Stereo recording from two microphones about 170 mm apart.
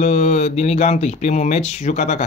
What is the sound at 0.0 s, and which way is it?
Speech, 45° left (ahead or behind).